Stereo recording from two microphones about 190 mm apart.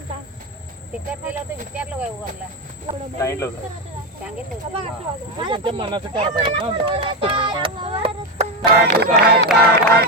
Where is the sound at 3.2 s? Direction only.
15° left (ahead or behind).